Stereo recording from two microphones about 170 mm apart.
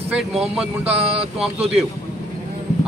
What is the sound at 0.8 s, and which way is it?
Speech, 35° right (ahead or behind).